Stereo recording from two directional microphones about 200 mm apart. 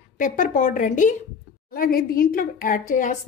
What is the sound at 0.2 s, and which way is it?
A woman's voice, 40° left (ahead or behind).